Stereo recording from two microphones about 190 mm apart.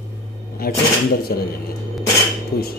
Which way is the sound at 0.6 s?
55° left (ahead or behind).